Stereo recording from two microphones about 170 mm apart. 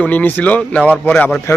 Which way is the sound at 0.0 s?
10° left (ahead or behind).